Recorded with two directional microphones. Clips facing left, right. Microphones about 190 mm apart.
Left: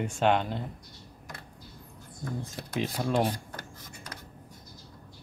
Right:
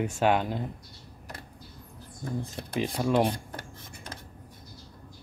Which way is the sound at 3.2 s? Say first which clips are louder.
Right 2 dB; 25° right (ahead or behind).